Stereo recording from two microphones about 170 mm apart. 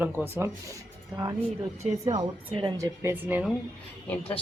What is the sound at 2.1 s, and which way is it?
Speech, 30° right (ahead or behind).